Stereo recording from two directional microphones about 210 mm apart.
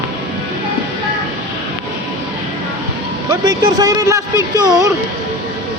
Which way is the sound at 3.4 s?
20° right (ahead or behind).